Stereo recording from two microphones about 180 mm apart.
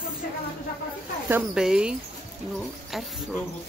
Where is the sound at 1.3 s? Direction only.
5° right (ahead or behind).